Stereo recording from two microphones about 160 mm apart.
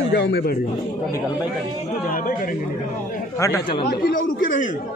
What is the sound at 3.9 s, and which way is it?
Speech, 65° left (ahead or behind).